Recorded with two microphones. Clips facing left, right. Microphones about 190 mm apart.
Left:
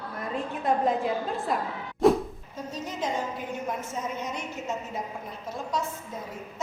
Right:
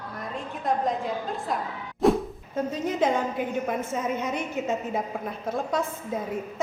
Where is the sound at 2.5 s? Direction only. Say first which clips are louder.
Right 8 dB; 55° right (ahead or behind).